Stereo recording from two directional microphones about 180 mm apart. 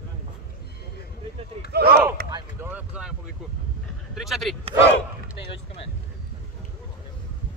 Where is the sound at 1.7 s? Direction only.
60° right (ahead or behind).